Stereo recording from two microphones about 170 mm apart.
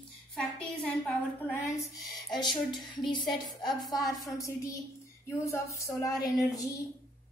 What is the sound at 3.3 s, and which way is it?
Speech, centre (ahead or behind).